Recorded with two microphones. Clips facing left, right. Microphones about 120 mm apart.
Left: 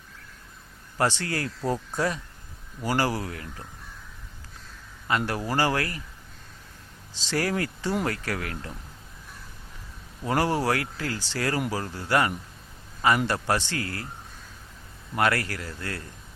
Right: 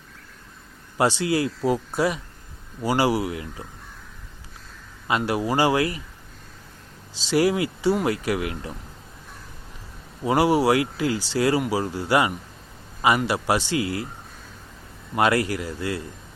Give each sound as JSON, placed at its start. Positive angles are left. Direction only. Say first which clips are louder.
{"t": 0.9, "sound": "speech", "louder": "right 5 dB", "side_deg": -15}
{"t": 5.0, "sound": "speech", "louder": "right 4 dB", "side_deg": -15}
{"t": 7.3, "sound": "speech", "louder": "right 6 dB", "side_deg": -15}
{"t": 10.2, "sound": "speech", "louder": "right 6 dB", "side_deg": -10}
{"t": 15.1, "sound": "speech", "louder": "right 4 dB", "side_deg": -20}